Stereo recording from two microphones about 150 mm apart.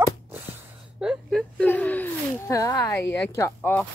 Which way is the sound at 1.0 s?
Centre (ahead or behind).